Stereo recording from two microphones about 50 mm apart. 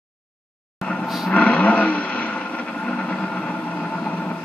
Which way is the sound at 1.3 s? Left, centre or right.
Left.